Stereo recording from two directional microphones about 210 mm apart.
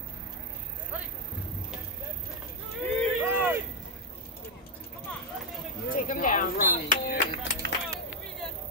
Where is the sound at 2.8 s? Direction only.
10° left (ahead or behind).